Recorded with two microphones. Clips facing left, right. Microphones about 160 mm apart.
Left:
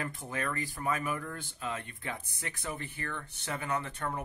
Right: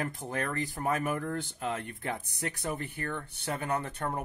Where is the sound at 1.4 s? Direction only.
65° right (ahead or behind).